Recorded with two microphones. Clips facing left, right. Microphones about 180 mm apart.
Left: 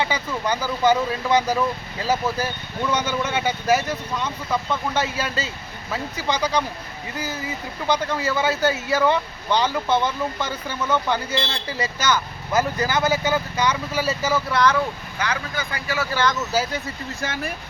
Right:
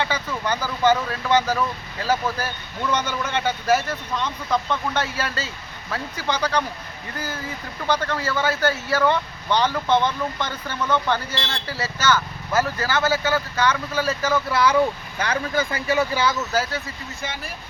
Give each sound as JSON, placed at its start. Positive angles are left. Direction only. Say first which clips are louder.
{"t": 0.0, "sound": "speech", "louder": "left 1 dB", "side_deg": 10}
{"t": 7.9, "sound": "speech", "louder": "left 1 dB", "side_deg": 10}
{"t": 14.5, "sound": "speech", "louder": "left 1 dB", "side_deg": -10}
{"t": 15.7, "sound": "speech", "louder": "right 1 dB", "side_deg": -20}
{"t": 16.5, "sound": "speech", "louder": "left 1 dB", "side_deg": 10}
{"t": 17.2, "sound": "speech", "louder": "left 4 dB", "side_deg": 45}